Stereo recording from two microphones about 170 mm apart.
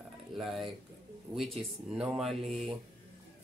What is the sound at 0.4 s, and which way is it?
Speech, centre (ahead or behind).